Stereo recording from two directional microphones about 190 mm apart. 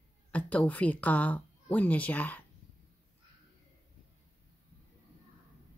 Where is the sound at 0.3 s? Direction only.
5° left (ahead or behind).